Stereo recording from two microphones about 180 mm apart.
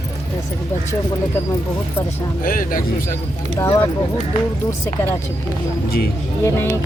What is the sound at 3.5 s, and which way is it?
Speech, 20° left (ahead or behind).